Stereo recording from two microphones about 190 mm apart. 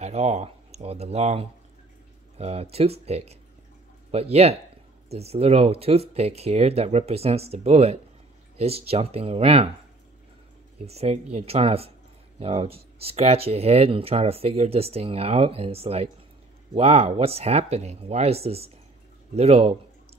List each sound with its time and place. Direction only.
0.0 s speech: 35° right (ahead or behind)
10.8 s speech: 35° right (ahead or behind)